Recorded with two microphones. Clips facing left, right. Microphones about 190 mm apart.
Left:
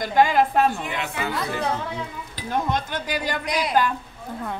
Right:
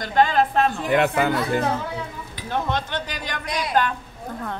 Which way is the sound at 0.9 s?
55° right (ahead or behind).